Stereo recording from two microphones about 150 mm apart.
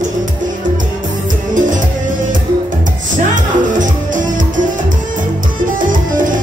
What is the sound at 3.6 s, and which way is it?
Music, 60° right (ahead or behind).